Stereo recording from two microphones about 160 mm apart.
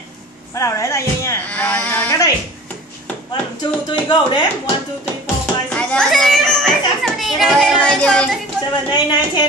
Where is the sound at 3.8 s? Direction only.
25° left (ahead or behind).